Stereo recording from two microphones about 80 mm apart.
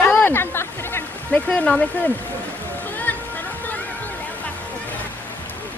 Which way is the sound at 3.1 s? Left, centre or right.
Left.